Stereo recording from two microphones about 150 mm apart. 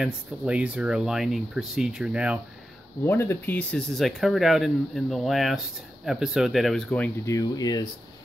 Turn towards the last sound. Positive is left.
turn(degrees=25)  # may be behind; listen again after turning